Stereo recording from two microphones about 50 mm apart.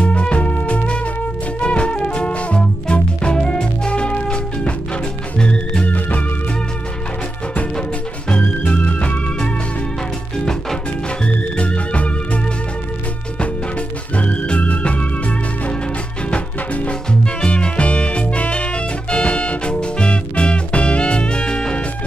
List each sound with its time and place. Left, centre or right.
0.0 s music: left
5.9 s music: left
8.3 s music: left
10.4 s music: centre
11.2 s music: left
13.4 s music: left